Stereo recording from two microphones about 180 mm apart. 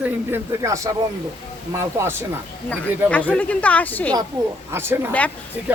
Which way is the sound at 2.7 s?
10° left (ahead or behind).